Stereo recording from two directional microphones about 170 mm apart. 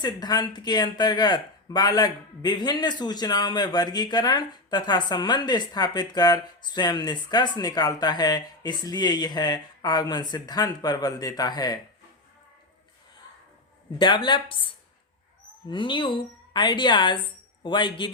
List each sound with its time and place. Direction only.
0.0 s speech: 25° left (ahead or behind)
14.0 s speech: 25° left (ahead or behind)
15.7 s speech: 30° left (ahead or behind)